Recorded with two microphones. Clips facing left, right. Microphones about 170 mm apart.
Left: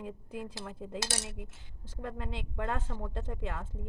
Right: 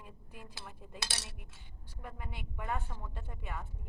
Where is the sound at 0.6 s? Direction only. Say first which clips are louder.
Left 9 dB; 90° left.